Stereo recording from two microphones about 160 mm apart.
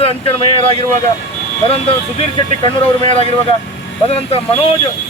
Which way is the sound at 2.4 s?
35° left (ahead or behind).